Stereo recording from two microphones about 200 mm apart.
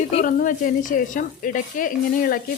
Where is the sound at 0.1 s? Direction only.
40° left (ahead or behind).